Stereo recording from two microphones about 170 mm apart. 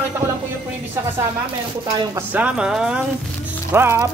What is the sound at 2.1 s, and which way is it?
A man's voice, 10° right (ahead or behind).